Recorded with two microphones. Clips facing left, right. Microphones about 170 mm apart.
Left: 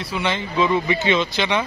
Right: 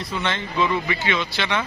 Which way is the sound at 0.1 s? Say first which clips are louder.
Left 3 dB; 10° left (ahead or behind).